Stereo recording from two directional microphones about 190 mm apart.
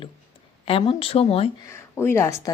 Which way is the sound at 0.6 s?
30° left (ahead or behind).